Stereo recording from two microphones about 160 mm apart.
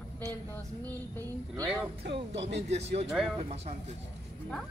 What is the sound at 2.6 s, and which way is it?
A man's voice, 40° right (ahead or behind).